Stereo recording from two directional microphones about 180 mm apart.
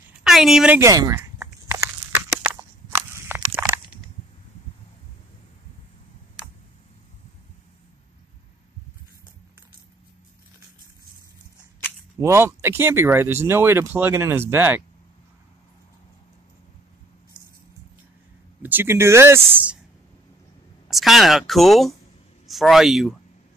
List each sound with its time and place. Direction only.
0.2 s a woman's voice: centre (ahead or behind)
0.7 s walk: 20° right (ahead or behind)
3.1 s crushing: 10° right (ahead or behind)
12.2 s speech: 15° right (ahead or behind)
18.6 s speech: 10° right (ahead or behind)
20.9 s speech: centre (ahead or behind)